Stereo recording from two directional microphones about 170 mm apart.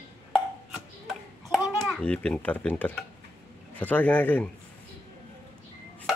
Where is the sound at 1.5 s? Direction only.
5° left (ahead or behind).